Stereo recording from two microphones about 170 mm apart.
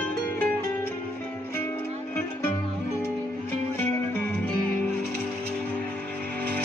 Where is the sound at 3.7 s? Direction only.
10° left (ahead or behind).